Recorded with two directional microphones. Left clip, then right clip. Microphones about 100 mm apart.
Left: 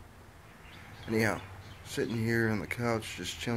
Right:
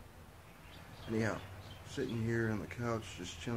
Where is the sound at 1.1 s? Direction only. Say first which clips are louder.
Left 7 dB; 30° left (ahead or behind).